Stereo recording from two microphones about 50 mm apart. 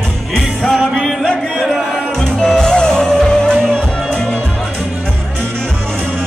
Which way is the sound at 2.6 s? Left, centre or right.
Centre.